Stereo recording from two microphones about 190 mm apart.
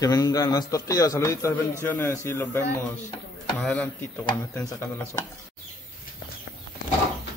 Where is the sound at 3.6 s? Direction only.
5° left (ahead or behind).